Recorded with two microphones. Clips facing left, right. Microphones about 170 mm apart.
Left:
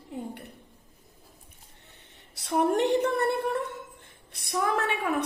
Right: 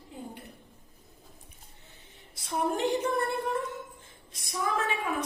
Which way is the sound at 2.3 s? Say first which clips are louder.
Left 5 dB; 70° left (ahead or behind).